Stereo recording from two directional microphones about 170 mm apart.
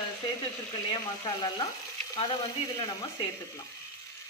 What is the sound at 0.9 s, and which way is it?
Speech, 25° left (ahead or behind).